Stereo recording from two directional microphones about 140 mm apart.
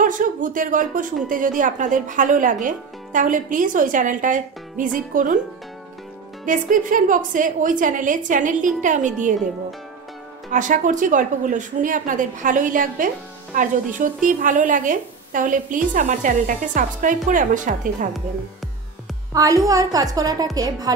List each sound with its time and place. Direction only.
0.0 s a woman's voice: 70° right (ahead or behind)
6.4 s a woman's voice: 70° right (ahead or behind)
10.5 s a woman's voice: 65° right (ahead or behind)
19.3 s a woman's voice: 25° right (ahead or behind)